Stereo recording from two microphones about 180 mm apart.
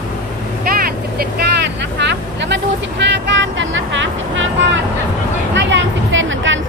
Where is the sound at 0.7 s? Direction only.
55° right (ahead or behind).